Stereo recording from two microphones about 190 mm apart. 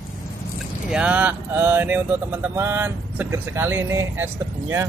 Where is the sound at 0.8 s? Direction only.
5° right (ahead or behind).